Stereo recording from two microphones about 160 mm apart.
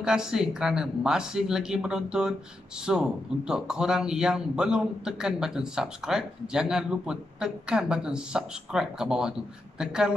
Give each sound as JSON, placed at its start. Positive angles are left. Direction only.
{"t": 0.0, "sound": "speech", "side_deg": -5}